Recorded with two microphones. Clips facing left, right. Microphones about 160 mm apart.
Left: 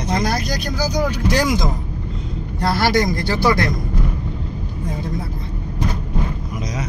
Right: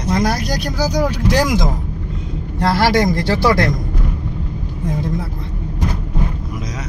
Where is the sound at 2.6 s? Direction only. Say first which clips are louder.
Right 3 dB; 90° right.